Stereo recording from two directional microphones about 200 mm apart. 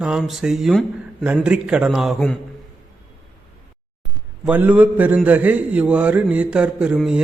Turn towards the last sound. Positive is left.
turn(degrees=-5)  # may be behind; listen again after turning